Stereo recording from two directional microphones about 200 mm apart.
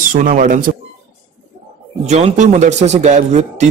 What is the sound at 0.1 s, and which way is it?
Speech, 40° right (ahead or behind).